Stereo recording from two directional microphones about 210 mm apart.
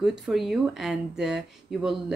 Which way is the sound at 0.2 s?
Centre (ahead or behind).